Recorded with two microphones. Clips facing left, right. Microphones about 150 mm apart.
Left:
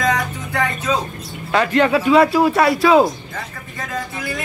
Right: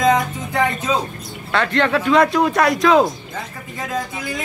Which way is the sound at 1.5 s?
10° left (ahead or behind).